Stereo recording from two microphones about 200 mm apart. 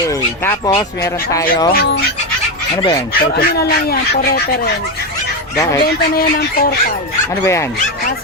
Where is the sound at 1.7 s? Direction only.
50° left (ahead or behind).